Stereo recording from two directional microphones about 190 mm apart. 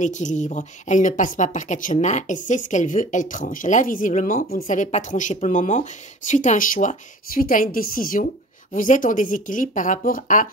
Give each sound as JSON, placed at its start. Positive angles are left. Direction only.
{"t": 0.0, "sound": "speech", "side_deg": 40}